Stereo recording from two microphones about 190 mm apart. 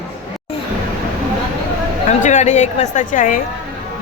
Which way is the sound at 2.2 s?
40° left (ahead or behind).